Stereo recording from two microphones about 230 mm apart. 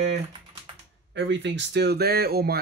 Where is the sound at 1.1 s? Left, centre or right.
Right.